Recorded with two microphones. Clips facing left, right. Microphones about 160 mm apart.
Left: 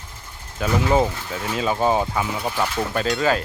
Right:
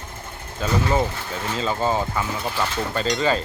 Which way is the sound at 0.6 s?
15° left (ahead or behind).